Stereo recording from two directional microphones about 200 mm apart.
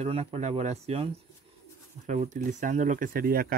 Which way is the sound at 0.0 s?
30° right (ahead or behind).